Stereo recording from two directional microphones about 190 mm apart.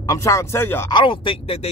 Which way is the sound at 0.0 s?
15° left (ahead or behind).